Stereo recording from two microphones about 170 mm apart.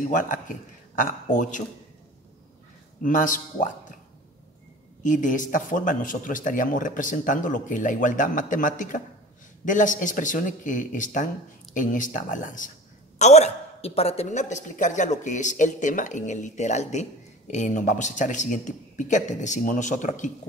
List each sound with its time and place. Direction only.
0.1 s speech: 50° left (ahead or behind)
3.0 s speech: 50° left (ahead or behind)
5.0 s speech: 50° left (ahead or behind)